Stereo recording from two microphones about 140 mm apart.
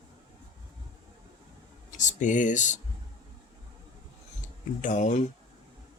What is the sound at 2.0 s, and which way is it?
Speech, 60° left (ahead or behind).